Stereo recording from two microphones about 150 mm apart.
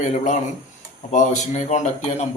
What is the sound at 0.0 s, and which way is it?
A man's voice, 55° left (ahead or behind).